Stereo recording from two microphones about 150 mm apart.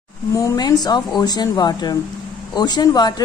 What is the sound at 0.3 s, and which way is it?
A woman's voice, 25° left (ahead or behind).